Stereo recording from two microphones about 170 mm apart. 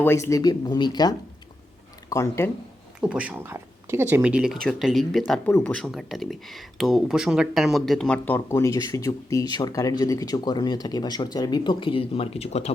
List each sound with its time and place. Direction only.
0.0 s speech: 15° left (ahead or behind)
3.0 s speech: 5° right (ahead or behind)
5.5 s speech: 10° left (ahead or behind); by 12.7 s 35° left (ahead or behind)